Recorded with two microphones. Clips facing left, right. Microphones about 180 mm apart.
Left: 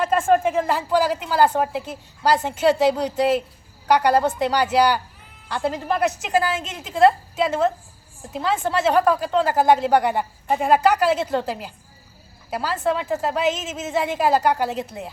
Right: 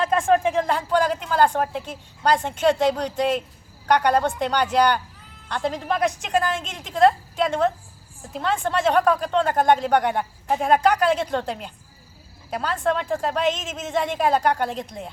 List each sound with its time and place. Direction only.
0.0 s speech: centre (ahead or behind)